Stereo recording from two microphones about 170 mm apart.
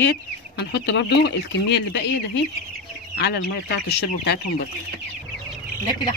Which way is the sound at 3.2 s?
80° left.